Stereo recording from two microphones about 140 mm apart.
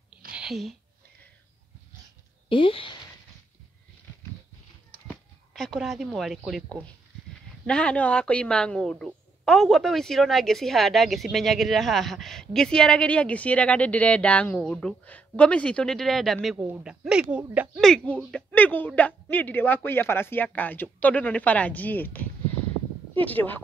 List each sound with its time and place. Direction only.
0.4 s speech: centre (ahead or behind)
2.5 s speech: 40° left (ahead or behind)
5.5 s a woman's voice: 5° left (ahead or behind)
17.7 s a woman's voice: 5° left (ahead or behind)